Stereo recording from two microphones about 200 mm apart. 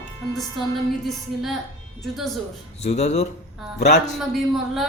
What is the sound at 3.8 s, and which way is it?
Speech, 55° left (ahead or behind).